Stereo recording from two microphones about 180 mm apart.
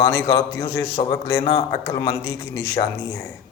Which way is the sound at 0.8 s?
30° left (ahead or behind).